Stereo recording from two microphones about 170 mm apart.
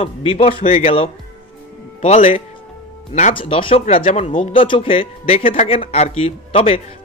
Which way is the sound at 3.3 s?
30° left (ahead or behind).